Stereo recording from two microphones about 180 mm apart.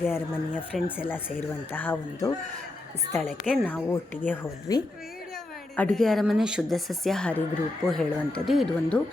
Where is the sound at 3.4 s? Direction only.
5° right (ahead or behind).